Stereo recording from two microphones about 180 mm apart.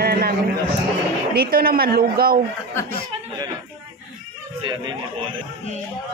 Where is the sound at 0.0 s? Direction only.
60° right (ahead or behind).